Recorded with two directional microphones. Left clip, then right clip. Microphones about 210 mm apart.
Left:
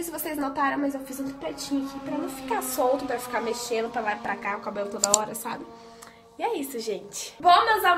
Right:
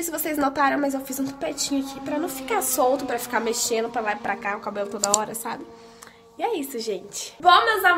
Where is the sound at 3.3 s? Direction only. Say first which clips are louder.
Right 5 dB; 35° right (ahead or behind).